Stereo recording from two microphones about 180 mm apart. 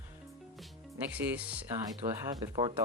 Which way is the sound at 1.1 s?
10° right (ahead or behind).